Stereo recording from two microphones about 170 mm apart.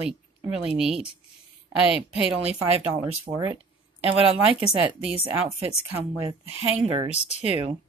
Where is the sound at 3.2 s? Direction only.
20° right (ahead or behind).